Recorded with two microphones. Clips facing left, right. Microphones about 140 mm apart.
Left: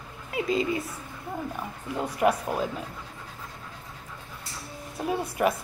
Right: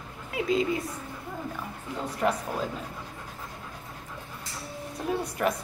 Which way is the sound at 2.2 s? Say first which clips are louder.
Left 4 dB; 15° left (ahead or behind).